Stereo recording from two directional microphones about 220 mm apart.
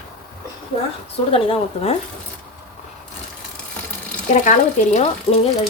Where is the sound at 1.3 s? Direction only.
25° left (ahead or behind).